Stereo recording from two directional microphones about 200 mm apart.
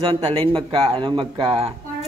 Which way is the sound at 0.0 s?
30° right (ahead or behind).